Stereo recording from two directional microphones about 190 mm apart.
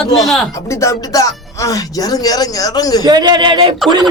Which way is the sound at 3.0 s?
20° right (ahead or behind).